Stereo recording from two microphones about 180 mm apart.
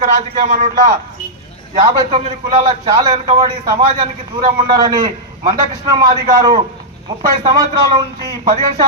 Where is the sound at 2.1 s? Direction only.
30° right (ahead or behind).